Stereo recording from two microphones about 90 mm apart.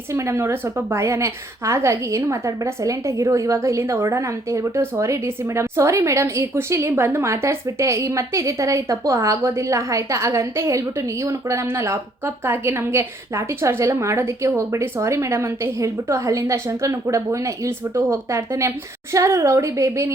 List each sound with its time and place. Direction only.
0.1 s a woman's voice: 30° right (ahead or behind)